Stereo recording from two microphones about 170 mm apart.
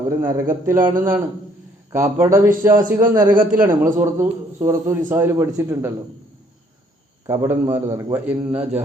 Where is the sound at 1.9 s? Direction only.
15° right (ahead or behind).